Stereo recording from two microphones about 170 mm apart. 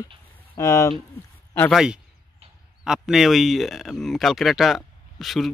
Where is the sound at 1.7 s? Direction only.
5° right (ahead or behind).